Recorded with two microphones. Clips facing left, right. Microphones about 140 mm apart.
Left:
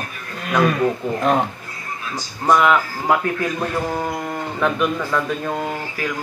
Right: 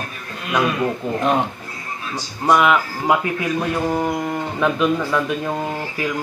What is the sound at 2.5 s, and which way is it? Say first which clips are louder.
A man's voice: even; 10° right (ahead or behind).